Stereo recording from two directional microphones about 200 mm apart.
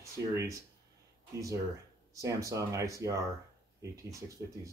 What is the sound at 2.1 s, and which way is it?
Speech, 15° right (ahead or behind).